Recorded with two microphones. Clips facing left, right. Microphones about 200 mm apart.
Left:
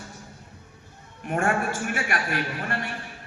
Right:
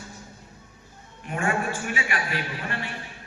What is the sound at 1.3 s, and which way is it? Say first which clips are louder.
A man's voice: left 2 dB; 50° left (ahead or behind).